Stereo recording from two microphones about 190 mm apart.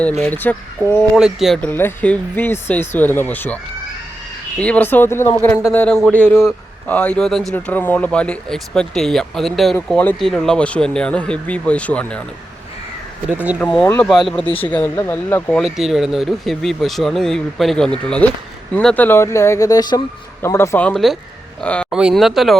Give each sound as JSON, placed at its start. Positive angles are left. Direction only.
{"t": 0.2, "sound": "speech", "side_deg": 10}
{"t": 1.1, "sound": "a man's voice", "side_deg": 0}
{"t": 1.7, "sound": "a man's voice", "side_deg": 10}
{"t": 13.3, "sound": "speech", "side_deg": -10}
{"t": 13.6, "sound": "a man's voice", "side_deg": 5}
{"t": 21.8, "sound": "a man's voice", "side_deg": -5}